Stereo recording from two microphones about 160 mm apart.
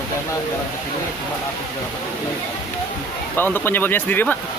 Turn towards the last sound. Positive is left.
turn(degrees=10)  # may be behind; listen again after turning